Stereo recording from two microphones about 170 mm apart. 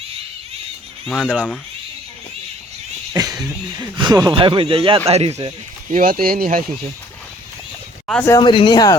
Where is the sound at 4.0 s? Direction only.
25° right (ahead or behind); by 6.6 s 55° right (ahead or behind).